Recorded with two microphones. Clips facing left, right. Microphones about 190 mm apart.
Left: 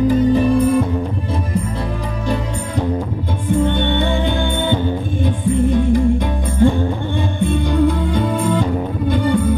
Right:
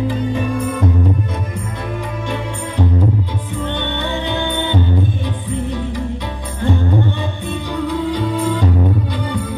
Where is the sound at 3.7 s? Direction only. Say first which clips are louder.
Left 4 dB; 50° left (ahead or behind).